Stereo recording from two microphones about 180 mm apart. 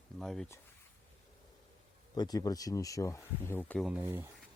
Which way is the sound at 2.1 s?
20° left (ahead or behind).